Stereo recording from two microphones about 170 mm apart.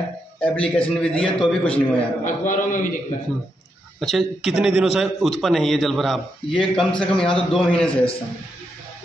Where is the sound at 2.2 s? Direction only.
50° left (ahead or behind).